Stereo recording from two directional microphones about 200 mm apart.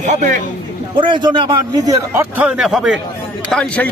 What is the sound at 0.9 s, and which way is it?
A man's voice, 25° right (ahead or behind).